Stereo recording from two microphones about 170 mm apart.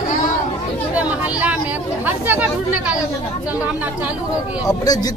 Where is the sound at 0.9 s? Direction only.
10° right (ahead or behind).